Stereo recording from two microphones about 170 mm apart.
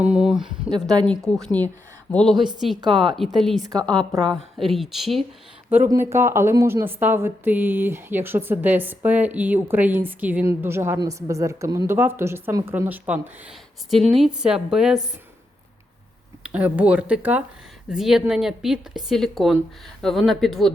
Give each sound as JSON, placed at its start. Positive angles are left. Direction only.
{"t": 0.0, "sound": "a sound", "side_deg": -5}
{"t": 0.7, "sound": "a woman's voice", "side_deg": -25}
{"t": 1.0, "sound": "a woman's voice", "side_deg": 5}
{"t": 3.6, "sound": "a woman's voice", "side_deg": -20}
{"t": 4.2, "sound": "a woman's voice", "side_deg": 0}
{"t": 5.9, "sound": "a woman's voice", "side_deg": -15}
{"t": 16.4, "sound": "a woman's voice", "side_deg": -10}